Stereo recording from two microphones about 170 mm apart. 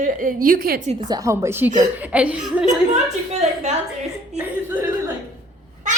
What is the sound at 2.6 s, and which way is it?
A woman's voice, 40° right (ahead or behind).